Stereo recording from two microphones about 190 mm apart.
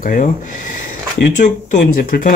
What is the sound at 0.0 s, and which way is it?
Speech, 45° left (ahead or behind).